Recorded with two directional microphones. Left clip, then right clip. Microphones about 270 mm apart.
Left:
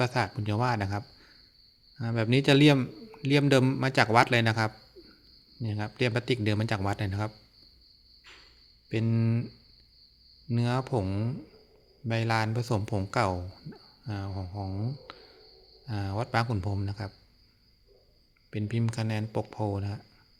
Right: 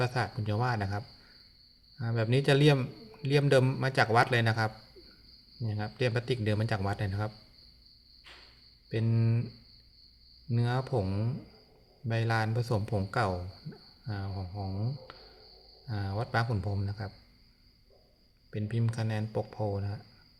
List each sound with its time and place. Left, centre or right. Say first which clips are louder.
0.0 s a man's voice: left 3 dB; left
8.9 s a man's voice: left 3 dB; left
10.5 s a man's voice: left 2 dB; left
18.5 s a man's voice: left 3 dB; left